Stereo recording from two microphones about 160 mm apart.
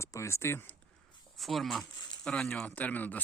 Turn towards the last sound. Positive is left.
turn(degrees=10)  # may be behind; listen again after turning